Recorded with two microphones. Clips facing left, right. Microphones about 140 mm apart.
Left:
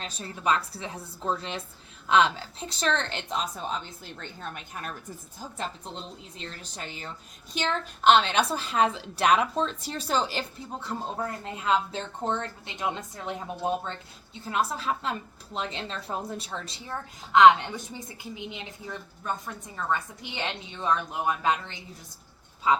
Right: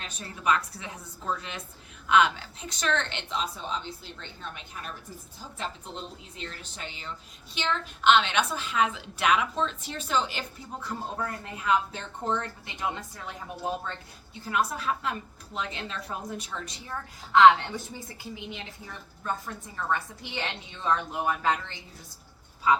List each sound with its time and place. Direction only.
0.0 s a woman's voice: 30° left (ahead or behind); by 4.9 s 50° left (ahead or behind)
6.3 s a woman's voice: 35° left (ahead or behind); by 18.6 s 20° left (ahead or behind)
19.7 s a woman's voice: 20° left (ahead or behind)